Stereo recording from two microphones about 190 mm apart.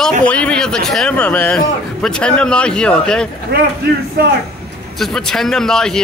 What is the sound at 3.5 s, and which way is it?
Speech, 60° right (ahead or behind).